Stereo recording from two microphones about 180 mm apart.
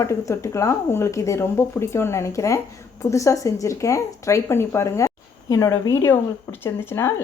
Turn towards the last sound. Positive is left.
turn(degrees=15)  # may be behind; listen again after turning